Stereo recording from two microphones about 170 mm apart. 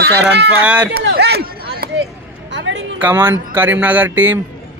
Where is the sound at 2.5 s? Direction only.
90° right.